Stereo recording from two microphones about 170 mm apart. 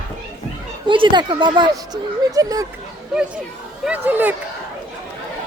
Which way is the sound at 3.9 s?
10° right (ahead or behind).